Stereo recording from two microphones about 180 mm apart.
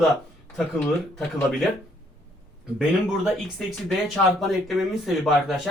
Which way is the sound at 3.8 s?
Centre (ahead or behind).